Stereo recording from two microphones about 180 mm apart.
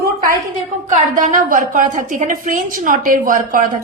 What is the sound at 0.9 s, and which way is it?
A woman's voice, 45° right (ahead or behind).